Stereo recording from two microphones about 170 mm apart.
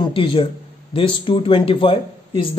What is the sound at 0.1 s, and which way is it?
A man's voice, 30° left (ahead or behind).